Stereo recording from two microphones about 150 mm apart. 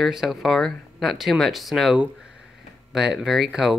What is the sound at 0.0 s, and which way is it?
Speech, centre (ahead or behind).